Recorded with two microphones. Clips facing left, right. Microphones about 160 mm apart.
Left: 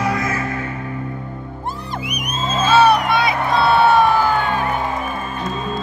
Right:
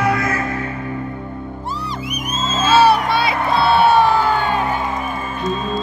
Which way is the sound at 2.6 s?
30° right (ahead or behind).